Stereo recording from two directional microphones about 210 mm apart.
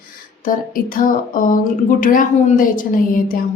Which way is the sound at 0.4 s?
40° left (ahead or behind).